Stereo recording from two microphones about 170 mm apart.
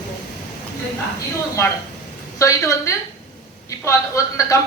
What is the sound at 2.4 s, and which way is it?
Speech, 20° left (ahead or behind).